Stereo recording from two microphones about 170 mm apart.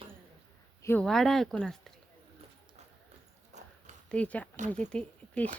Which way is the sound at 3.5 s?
45° right (ahead or behind).